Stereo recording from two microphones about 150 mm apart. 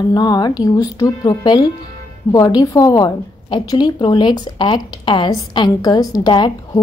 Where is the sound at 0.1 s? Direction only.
25° left (ahead or behind).